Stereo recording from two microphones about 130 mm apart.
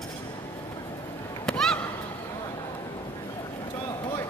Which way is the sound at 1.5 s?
5° left (ahead or behind).